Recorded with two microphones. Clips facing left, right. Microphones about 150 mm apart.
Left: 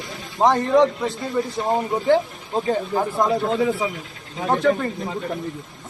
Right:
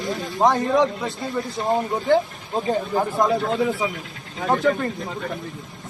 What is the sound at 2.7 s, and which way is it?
Speech, centre (ahead or behind).